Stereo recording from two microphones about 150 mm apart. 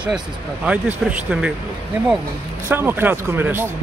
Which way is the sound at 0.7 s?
10° right (ahead or behind).